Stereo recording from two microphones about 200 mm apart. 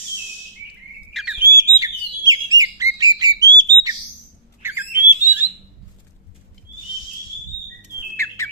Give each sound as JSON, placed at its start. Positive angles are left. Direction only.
{"t": 1.1, "sound": "bird", "side_deg": -5}
{"t": 1.5, "sound": "bird", "side_deg": -20}
{"t": 4.6, "sound": "a sound", "side_deg": -10}
{"t": 8.1, "sound": "bird", "side_deg": 15}